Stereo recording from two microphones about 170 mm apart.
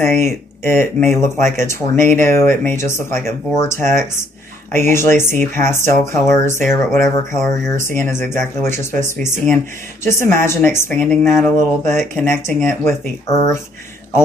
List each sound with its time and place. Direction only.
0.0 s speech: 15° left (ahead or behind)
7.7 s speech: 50° right (ahead or behind)
8.0 s speech: 15° left (ahead or behind)